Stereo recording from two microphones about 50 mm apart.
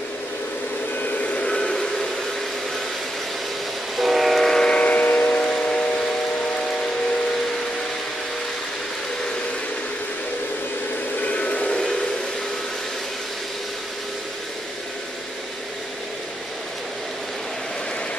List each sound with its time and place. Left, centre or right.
1.2 s train: left
1.6 s vehicle: centre
3.9 s train: centre
4.6 s train: left
11.1 s vehicle: left